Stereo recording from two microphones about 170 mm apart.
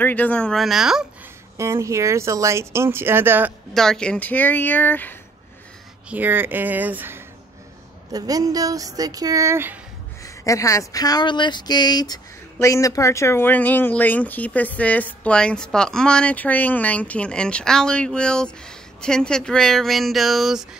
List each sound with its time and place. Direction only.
0.0 s speech: 10° left (ahead or behind)
1.6 s speech: 15° right (ahead or behind)
3.7 s speech: 5° left (ahead or behind)
6.0 s speech: 10° right (ahead or behind)
10.2 s speech: 20° left (ahead or behind); by 20.6 s centre (ahead or behind)